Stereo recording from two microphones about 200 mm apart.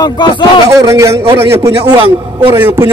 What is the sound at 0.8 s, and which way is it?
A man's voice, 15° right (ahead or behind).